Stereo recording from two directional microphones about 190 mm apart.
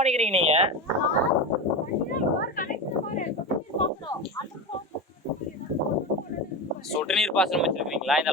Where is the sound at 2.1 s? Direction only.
45° left (ahead or behind).